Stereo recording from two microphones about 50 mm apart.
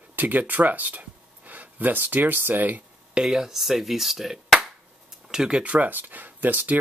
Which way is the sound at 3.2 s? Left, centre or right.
Centre.